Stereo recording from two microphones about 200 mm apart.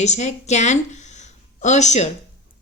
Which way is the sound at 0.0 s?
35° left (ahead or behind).